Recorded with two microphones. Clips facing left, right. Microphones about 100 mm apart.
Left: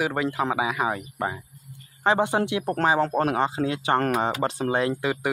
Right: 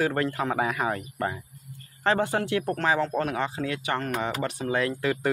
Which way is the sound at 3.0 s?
40° left (ahead or behind).